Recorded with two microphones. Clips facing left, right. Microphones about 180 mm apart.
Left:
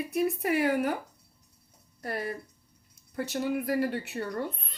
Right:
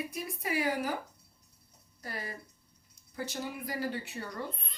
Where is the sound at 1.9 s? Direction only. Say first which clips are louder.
Left 8 dB; 60° left (ahead or behind).